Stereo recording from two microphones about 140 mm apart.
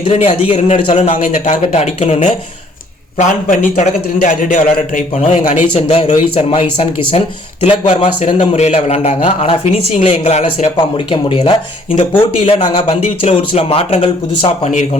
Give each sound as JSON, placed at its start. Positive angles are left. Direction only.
{"t": 0.0, "sound": "a man's voice", "side_deg": 45}
{"t": 1.1, "sound": "a man's voice", "side_deg": 65}
{"t": 3.2, "sound": "a man's voice", "side_deg": 65}
{"t": 5.7, "sound": "a man's voice", "side_deg": 40}
{"t": 10.8, "sound": "a man's voice", "side_deg": 35}